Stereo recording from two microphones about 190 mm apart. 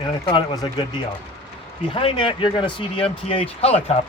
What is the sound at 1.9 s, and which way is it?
Speech, 25° left (ahead or behind).